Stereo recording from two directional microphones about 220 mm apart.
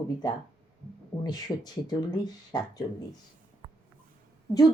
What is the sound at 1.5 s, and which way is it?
A woman's voice, 20° left (ahead or behind).